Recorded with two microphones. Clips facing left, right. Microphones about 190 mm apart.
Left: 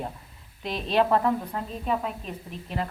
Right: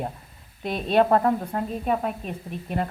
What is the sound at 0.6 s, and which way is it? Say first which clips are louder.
A woman's voice: right 3 dB; 55° right (ahead or behind).